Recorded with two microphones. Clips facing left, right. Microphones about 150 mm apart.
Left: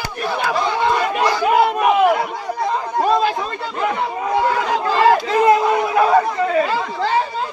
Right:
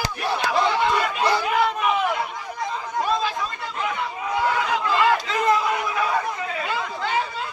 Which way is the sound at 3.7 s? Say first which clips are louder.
Left 8 dB; 45° left (ahead or behind).